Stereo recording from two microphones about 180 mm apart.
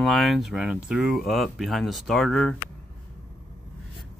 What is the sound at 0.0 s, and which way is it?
Speech, centre (ahead or behind).